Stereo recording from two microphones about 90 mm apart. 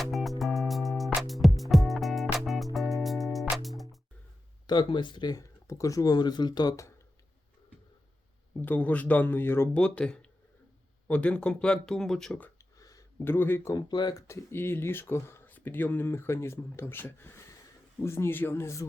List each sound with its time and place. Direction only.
0.0 s music: centre (ahead or behind)
4.6 s speech: 55° left (ahead or behind)
5.3 s speech: 35° left (ahead or behind)
8.6 s speech: 15° left (ahead or behind)
9.7 s speech: 10° left (ahead or behind)
12.5 s a sound: 40° left (ahead or behind)
13.2 s speech: 25° left (ahead or behind)
13.7 s speech: 50° left (ahead or behind); by 18.9 s 30° left (ahead or behind)